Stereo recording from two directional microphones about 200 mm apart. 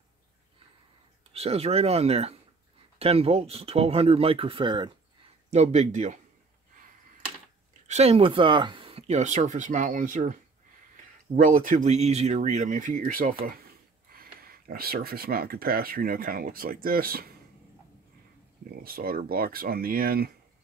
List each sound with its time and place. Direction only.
1.3 s speech: 30° right (ahead or behind)
7.8 s speech: 35° right (ahead or behind)
11.3 s speech: 45° right (ahead or behind)
18.8 s speech: 45° right (ahead or behind)